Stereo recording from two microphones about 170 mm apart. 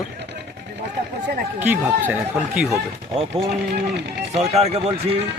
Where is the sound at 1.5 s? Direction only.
10° right (ahead or behind).